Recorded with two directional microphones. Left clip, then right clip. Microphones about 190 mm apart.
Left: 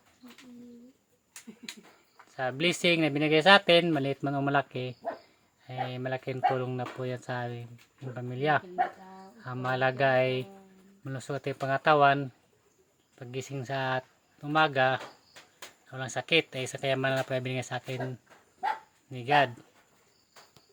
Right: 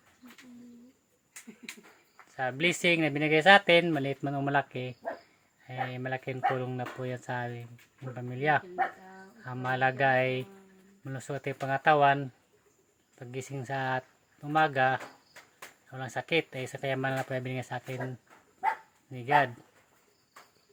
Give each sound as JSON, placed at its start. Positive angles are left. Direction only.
{"t": 2.4, "sound": "speech", "side_deg": 15}
{"t": 19.1, "sound": "speech", "side_deg": 15}